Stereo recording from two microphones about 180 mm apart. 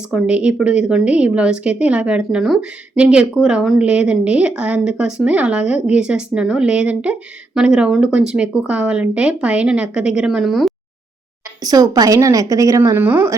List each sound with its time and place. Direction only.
0.1 s a woman's voice: 5° right (ahead or behind)
11.6 s a woman's voice: 20° right (ahead or behind)